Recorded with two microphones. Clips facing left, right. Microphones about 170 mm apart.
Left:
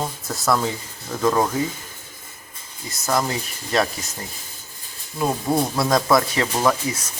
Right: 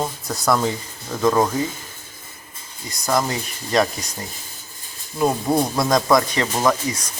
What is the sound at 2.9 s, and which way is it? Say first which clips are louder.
Speech: right 1 dB; 5° left (ahead or behind).